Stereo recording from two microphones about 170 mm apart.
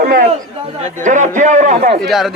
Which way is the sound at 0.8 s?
45° right (ahead or behind).